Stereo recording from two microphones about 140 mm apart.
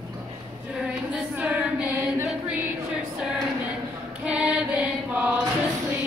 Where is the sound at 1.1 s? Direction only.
10° right (ahead or behind).